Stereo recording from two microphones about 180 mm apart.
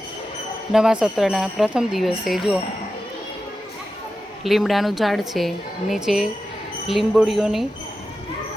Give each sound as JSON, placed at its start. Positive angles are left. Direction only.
{"t": 0.7, "sound": "a woman's voice", "side_deg": -5}
{"t": 4.4, "sound": "a woman's voice", "side_deg": 0}